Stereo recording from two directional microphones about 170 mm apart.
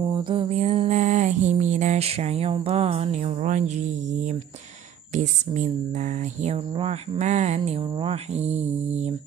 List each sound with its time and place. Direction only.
0.0 s speech: 30° right (ahead or behind)